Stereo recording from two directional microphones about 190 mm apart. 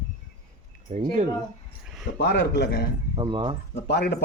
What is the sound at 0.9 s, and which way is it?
Speech, 40° right (ahead or behind).